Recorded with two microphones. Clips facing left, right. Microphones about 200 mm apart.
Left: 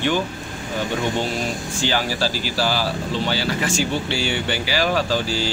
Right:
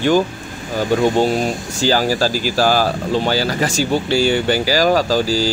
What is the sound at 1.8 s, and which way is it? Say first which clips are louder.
Speech: right 7 dB; 40° right (ahead or behind).